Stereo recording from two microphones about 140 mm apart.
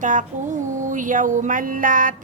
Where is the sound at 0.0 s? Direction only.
65° right (ahead or behind).